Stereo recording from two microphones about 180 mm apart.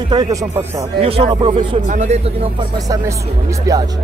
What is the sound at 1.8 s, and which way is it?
Speech, 45° right (ahead or behind).